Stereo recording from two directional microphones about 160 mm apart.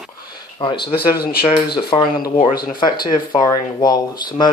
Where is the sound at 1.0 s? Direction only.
70° left (ahead or behind).